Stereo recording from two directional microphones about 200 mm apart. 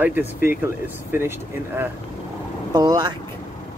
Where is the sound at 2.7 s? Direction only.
20° right (ahead or behind).